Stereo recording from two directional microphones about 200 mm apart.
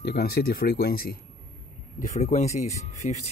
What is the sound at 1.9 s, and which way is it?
Speech, 40° left (ahead or behind).